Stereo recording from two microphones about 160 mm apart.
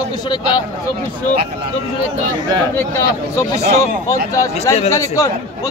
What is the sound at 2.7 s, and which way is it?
Speech, 20° left (ahead or behind).